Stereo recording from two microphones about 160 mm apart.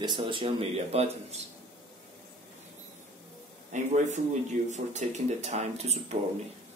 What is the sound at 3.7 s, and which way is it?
Speech, 50° right (ahead or behind).